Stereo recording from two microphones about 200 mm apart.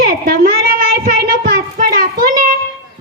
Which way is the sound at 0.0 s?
45° right (ahead or behind).